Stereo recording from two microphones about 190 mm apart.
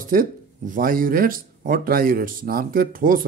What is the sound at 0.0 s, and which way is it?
Speech, 45° right (ahead or behind).